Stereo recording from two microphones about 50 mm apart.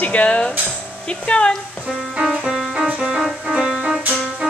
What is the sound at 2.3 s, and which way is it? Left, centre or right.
Music, centre.